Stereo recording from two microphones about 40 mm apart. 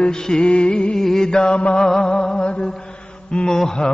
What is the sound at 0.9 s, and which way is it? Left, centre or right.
Chant, centre.